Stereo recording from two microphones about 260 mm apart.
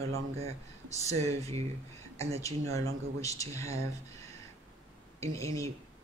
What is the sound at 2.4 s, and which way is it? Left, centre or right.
Speech, centre.